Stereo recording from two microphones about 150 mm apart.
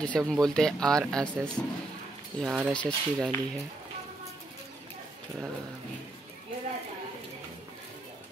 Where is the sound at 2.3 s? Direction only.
35° right (ahead or behind).